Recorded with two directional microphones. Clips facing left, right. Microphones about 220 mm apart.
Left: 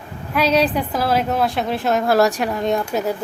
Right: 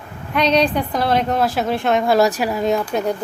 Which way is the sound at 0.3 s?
5° left (ahead or behind).